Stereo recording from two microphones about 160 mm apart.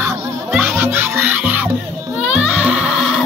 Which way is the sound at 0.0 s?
10° right (ahead or behind).